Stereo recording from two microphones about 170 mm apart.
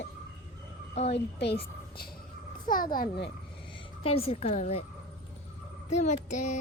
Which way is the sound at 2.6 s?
55° left (ahead or behind).